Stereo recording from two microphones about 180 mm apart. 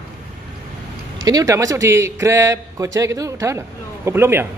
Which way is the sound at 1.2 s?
20° right (ahead or behind).